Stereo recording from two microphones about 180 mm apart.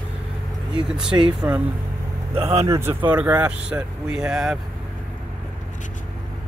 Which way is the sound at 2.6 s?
15° right (ahead or behind).